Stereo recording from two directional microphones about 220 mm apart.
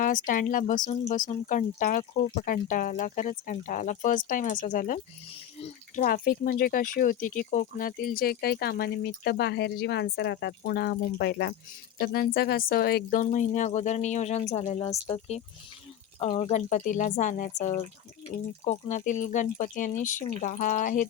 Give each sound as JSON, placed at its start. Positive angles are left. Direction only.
{"t": 0.0, "sound": "speech", "side_deg": 40}